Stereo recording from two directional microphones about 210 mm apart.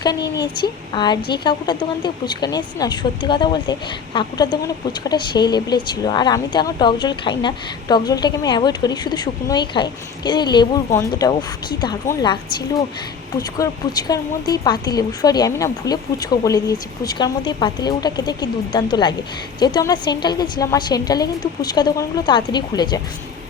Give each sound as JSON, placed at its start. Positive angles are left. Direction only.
{"t": 0.0, "sound": "a woman's voice", "side_deg": 20}